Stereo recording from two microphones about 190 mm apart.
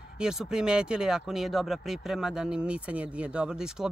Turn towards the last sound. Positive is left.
turn(degrees=-5)  # may be behind; listen again after turning